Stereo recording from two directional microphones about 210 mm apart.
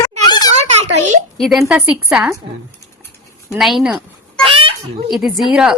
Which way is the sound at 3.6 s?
Centre (ahead or behind).